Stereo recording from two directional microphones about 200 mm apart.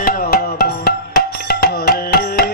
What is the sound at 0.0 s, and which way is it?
Music, 50° left (ahead or behind).